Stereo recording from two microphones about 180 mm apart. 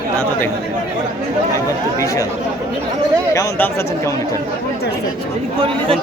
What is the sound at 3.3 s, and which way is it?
Speech, 15° left (ahead or behind).